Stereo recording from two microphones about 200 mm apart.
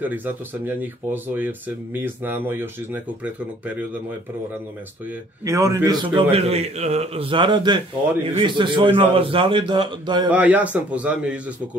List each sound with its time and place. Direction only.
0.0 s speech: 10° right (ahead or behind)
5.4 s speech: 15° right (ahead or behind)
6.3 s a man's voice: 30° right (ahead or behind)
10.3 s speech: 5° right (ahead or behind)